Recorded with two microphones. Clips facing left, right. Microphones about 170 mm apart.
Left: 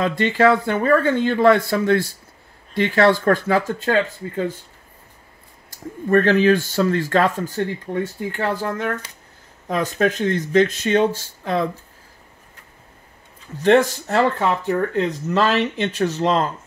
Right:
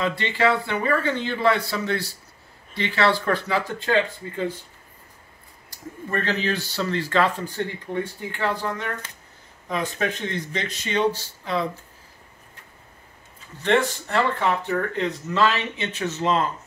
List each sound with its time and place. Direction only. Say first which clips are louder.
0.0 s speech: left 6 dB; 45° left (ahead or behind)
5.7 s speech: left 11 dB; 50° left (ahead or behind)
13.6 s speech: left 6 dB; 40° left (ahead or behind)
15.3 s speech: left 4 dB; 40° left (ahead or behind)